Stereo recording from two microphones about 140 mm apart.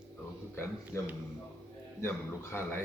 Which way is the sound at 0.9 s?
15° left (ahead or behind).